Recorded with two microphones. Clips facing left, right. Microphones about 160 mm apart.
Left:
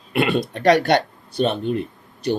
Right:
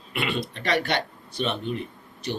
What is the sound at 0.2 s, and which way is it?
Speech, 50° left (ahead or behind).